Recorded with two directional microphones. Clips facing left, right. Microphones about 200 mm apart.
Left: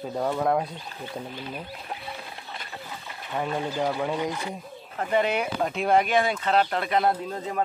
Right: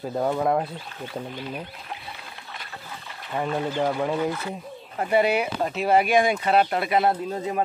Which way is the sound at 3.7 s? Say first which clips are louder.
Right 3 dB; 5° right (ahead or behind).